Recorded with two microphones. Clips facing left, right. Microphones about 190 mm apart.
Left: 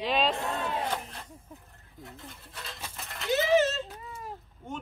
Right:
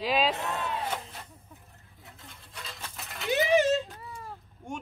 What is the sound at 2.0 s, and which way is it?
Speech, centre (ahead or behind).